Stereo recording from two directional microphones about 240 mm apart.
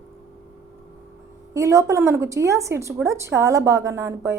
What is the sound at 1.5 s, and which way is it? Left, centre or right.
A woman's voice, centre.